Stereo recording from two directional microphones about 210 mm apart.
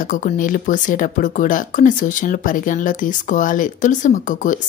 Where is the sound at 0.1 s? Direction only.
40° left (ahead or behind).